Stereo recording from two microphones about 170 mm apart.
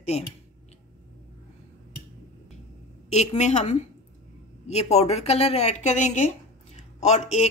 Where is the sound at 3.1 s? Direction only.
40° left (ahead or behind).